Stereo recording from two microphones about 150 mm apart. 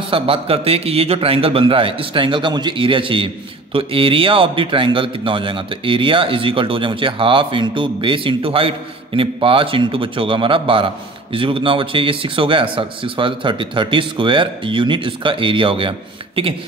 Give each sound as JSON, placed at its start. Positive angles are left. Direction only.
{"t": 0.1, "sound": "a man's voice", "side_deg": -40}